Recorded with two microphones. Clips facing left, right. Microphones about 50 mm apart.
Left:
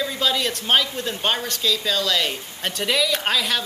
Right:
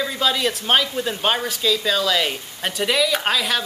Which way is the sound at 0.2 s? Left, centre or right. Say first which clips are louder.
Right 3 dB; centre.